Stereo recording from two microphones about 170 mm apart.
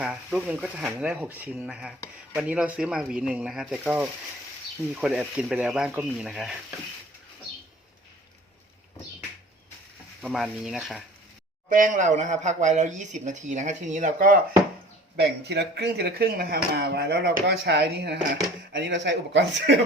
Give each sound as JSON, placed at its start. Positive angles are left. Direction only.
{"t": 0.0, "sound": "speech", "side_deg": -5}
{"t": 10.2, "sound": "speech", "side_deg": 0}
{"t": 11.7, "sound": "speech", "side_deg": -50}
{"t": 15.1, "sound": "speech", "side_deg": -80}
{"t": 18.7, "sound": "speech", "side_deg": -90}